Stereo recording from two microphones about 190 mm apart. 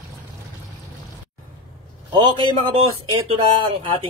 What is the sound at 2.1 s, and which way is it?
Speech, 25° right (ahead or behind).